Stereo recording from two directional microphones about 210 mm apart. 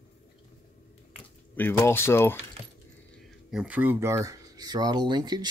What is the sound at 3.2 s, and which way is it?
Speech, 5° right (ahead or behind).